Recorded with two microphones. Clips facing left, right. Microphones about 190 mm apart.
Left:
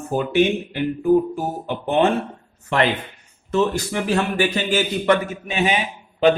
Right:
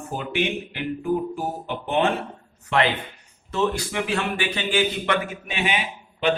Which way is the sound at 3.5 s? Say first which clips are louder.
Left 4 dB; 40° left (ahead or behind).